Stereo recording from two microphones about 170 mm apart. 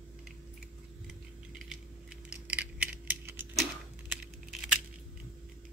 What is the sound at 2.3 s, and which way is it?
Coin, 10° right (ahead or behind).